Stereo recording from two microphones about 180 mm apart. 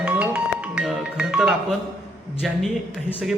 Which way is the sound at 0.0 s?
10° right (ahead or behind).